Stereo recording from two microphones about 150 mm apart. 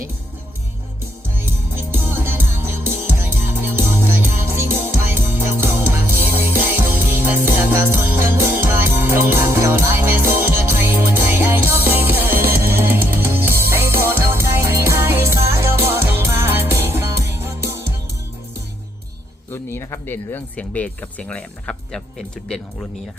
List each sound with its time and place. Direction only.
1.9 s music: 15° right (ahead or behind)
19.5 s speech: 15° left (ahead or behind)